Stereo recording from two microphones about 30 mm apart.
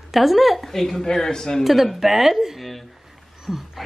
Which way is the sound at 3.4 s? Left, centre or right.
Centre.